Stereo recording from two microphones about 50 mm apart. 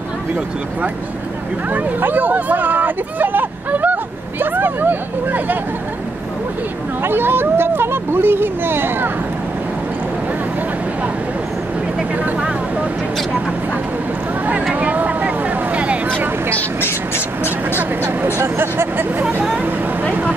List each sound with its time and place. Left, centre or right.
2.0 s speech: right
7.0 s speech: right
12.2 s vehicle: right
14.7 s vehicle: right
18.0 s speech: right